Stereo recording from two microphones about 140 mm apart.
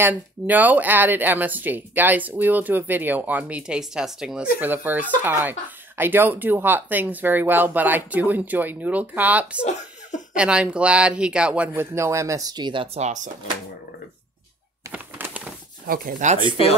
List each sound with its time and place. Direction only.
0.0 s speech: 10° right (ahead or behind); by 12.8 s 30° right (ahead or behind)
12.9 s speech: 55° right (ahead or behind)
14.9 s a sound: 10° right (ahead or behind)
15.9 s speech: 70° right (ahead or behind)